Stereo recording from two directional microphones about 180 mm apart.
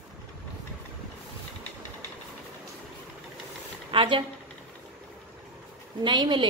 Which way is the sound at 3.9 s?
25° right (ahead or behind).